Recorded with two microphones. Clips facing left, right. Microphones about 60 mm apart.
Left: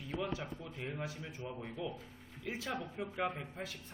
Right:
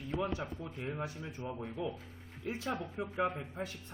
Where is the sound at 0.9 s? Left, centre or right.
Right.